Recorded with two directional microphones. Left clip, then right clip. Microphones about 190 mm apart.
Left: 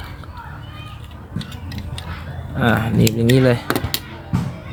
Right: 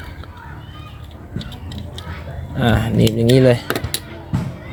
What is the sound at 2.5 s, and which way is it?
Speech, 10° right (ahead or behind).